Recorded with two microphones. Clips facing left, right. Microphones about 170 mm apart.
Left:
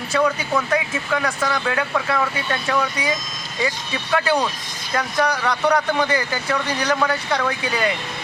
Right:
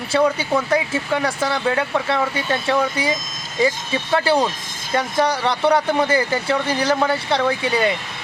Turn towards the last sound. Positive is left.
turn(degrees=-30)  # may be behind; listen again after turning